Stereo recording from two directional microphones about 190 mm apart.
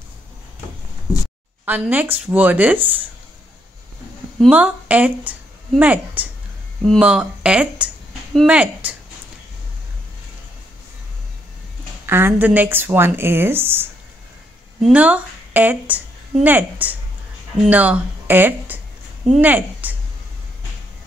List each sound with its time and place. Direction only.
1.7 s a woman's voice: 10° right (ahead or behind)
4.5 s a woman's voice: 5° right (ahead or behind)
12.1 s a woman's voice: 10° right (ahead or behind)